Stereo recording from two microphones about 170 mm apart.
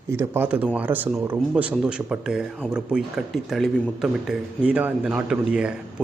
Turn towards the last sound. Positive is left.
turn(degrees=-5)  # may be behind; listen again after turning